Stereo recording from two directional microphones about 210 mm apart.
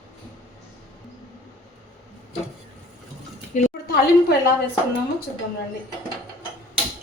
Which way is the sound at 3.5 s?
35° left (ahead or behind).